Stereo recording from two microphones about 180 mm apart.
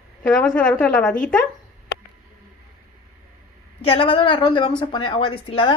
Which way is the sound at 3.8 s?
30° left (ahead or behind).